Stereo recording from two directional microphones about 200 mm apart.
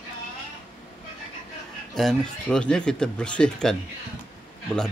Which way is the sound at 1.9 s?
Centre (ahead or behind).